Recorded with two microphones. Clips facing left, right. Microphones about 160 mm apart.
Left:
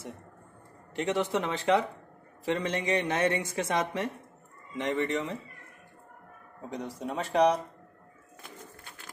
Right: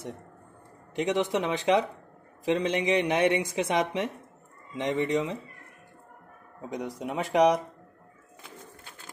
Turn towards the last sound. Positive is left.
turn(degrees=-15)  # may be behind; listen again after turning